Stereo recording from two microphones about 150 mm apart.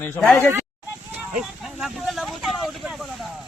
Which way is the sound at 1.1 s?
5° right (ahead or behind).